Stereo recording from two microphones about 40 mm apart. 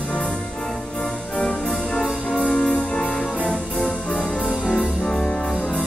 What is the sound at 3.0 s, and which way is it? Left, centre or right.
Music, centre.